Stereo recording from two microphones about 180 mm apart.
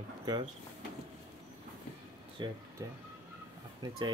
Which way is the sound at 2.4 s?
25° right (ahead or behind).